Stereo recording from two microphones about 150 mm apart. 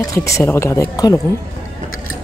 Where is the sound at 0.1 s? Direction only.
20° left (ahead or behind).